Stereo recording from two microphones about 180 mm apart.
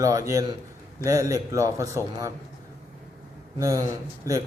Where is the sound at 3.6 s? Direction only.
15° right (ahead or behind).